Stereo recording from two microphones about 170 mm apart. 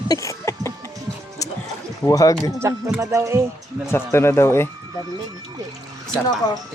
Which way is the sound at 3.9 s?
15° left (ahead or behind).